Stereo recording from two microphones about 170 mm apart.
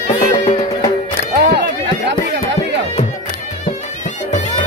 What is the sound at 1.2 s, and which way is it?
Music, 65° right (ahead or behind).